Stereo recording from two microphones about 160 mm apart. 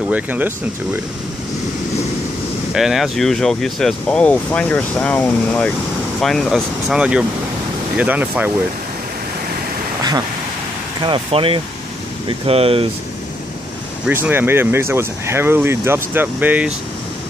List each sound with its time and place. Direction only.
0.1 s speech: 10° right (ahead or behind)
2.7 s speech: centre (ahead or behind)
11.0 s speech: 35° right (ahead or behind)
14.0 s speech: 10° right (ahead or behind)